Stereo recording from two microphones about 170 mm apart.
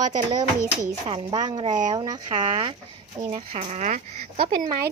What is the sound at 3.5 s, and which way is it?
Speech, 40° right (ahead or behind).